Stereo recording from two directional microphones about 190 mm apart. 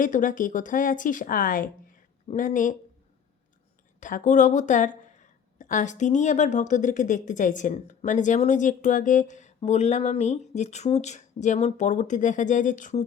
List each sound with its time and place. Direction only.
0.0 s a woman's voice: 45° left (ahead or behind)
4.0 s a woman's voice: 40° left (ahead or behind)